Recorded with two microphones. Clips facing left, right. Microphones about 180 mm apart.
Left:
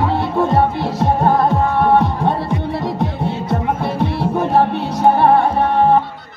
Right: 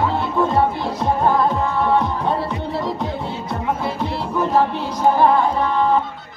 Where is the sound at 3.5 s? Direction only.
60° left (ahead or behind).